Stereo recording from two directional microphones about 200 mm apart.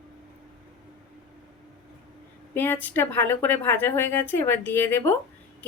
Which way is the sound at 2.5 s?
10° left (ahead or behind).